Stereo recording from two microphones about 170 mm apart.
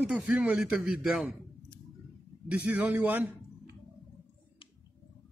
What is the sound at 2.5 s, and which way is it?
Speech, 10° right (ahead or behind).